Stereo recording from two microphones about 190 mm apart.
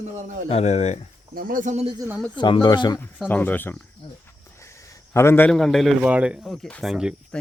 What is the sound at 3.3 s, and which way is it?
Speech, 10° left (ahead or behind).